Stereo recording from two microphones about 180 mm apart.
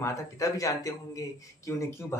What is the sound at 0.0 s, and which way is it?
Speech, 15° left (ahead or behind).